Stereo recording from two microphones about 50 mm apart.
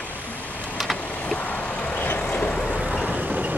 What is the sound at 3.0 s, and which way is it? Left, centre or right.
Vehicle, right.